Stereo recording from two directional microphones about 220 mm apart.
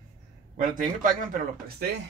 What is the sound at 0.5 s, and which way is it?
Speech, 40° right (ahead or behind).